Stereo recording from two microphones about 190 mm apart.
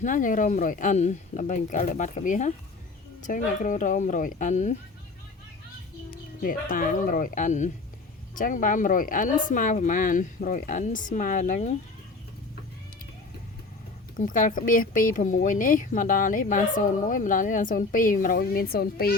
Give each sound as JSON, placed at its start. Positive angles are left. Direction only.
{"t": 0.0, "sound": "speech", "side_deg": 45}
{"t": 6.1, "sound": "a woman's voice", "side_deg": 45}
{"t": 14.2, "sound": "a woman's voice", "side_deg": 45}